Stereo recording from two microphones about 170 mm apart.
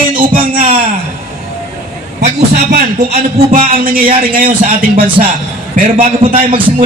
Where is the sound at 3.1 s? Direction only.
40° right (ahead or behind).